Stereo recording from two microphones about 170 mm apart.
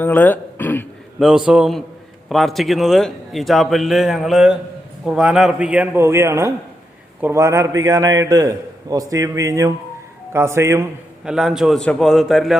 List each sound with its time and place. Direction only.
0.0 s throat clearing: 10° left (ahead or behind)
1.2 s a man's voice: 5° right (ahead or behind)
11.3 s a man's voice: 5° right (ahead or behind)